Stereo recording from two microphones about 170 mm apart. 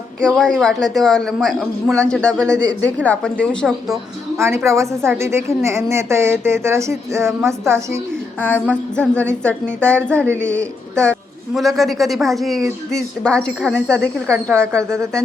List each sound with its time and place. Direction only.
0.2 s a woman's voice: 5° left (ahead or behind)
4.4 s a woman's voice: 15° right (ahead or behind)
8.4 s a woman's voice: 10° left (ahead or behind)